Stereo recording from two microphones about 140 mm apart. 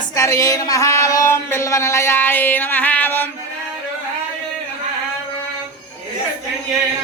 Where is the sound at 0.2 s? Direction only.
25° left (ahead or behind).